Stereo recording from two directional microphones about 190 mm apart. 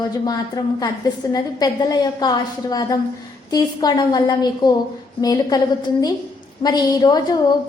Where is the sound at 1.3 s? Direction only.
20° left (ahead or behind).